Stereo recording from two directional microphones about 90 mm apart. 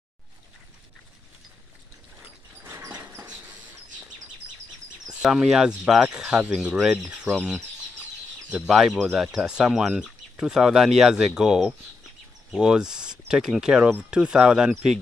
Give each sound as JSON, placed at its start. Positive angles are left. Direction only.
{"t": 3.0, "sound": "a sound", "side_deg": -25}
{"t": 5.2, "sound": "speech", "side_deg": -5}
{"t": 8.5, "sound": "speech", "side_deg": -10}
{"t": 8.7, "sound": "speech", "side_deg": 0}